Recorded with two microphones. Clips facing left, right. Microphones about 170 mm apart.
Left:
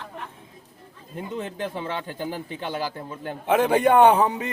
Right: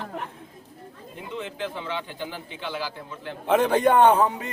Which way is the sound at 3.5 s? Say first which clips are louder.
Left 1 dB; 10° left (ahead or behind).